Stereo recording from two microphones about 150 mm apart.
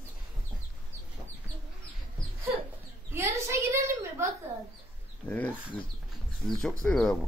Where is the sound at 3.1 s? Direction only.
15° right (ahead or behind).